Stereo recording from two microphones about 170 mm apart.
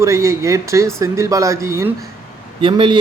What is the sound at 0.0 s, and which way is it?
Speech, 15° right (ahead or behind).